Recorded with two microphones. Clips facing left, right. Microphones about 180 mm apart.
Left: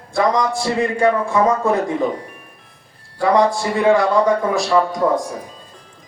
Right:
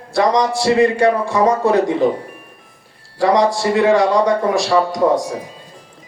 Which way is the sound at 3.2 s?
80° right.